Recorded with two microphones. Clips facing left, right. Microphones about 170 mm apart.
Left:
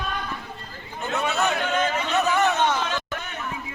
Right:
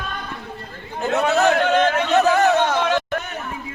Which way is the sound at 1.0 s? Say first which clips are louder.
Right 7 dB; 70° right (ahead or behind).